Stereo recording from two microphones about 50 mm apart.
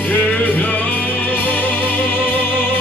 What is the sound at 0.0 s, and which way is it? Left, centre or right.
Music, left.